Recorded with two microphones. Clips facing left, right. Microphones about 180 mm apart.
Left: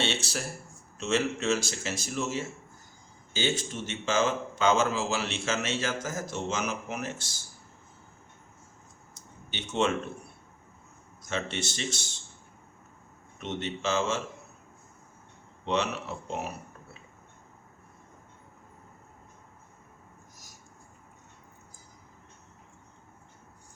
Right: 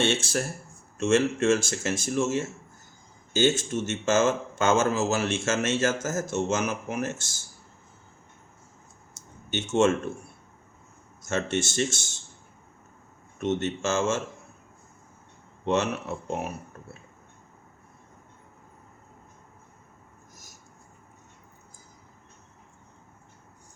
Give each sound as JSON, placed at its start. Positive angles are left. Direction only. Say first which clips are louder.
{"t": 0.0, "sound": "a man's voice", "louder": "right 6 dB", "side_deg": -50}
{"t": 3.6, "sound": "a man's voice", "louder": "right 7 dB", "side_deg": -45}
{"t": 9.5, "sound": "a man's voice", "louder": "right 6 dB", "side_deg": -45}
{"t": 11.3, "sound": "a man's voice", "louder": "right 6 dB", "side_deg": -45}
{"t": 13.4, "sound": "a man's voice", "louder": "right 6 dB", "side_deg": -45}
{"t": 15.6, "sound": "a man's voice", "louder": "right 4 dB", "side_deg": -50}